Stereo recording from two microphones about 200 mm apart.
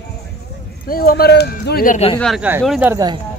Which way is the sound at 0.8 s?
50° left (ahead or behind).